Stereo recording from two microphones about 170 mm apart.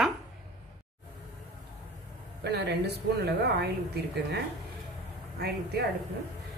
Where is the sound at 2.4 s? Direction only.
75° right (ahead or behind).